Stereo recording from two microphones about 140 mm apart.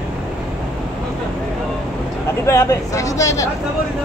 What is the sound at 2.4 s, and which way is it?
Speech, 20° left (ahead or behind).